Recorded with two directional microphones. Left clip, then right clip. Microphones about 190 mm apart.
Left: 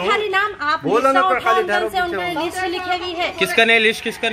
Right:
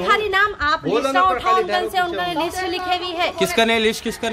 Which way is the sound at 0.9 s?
25° left (ahead or behind).